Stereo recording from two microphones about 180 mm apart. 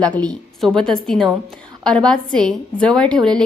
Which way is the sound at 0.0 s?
5° left (ahead or behind).